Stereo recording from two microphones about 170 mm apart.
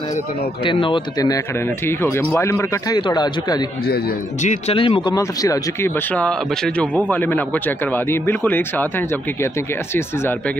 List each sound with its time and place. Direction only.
0.7 s speech: 30° left (ahead or behind)
4.4 s speech: 40° left (ahead or behind); by 9.5 s 10° left (ahead or behind)